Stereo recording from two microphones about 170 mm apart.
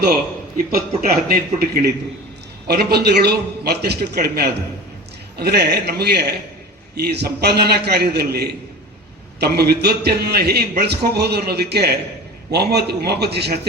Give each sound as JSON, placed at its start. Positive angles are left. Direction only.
{"t": 1.0, "sound": "a man's voice", "side_deg": -60}